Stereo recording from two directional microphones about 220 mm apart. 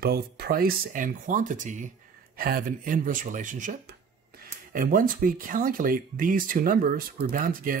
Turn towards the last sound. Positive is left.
turn(degrees=-40)  # may be behind; listen again after turning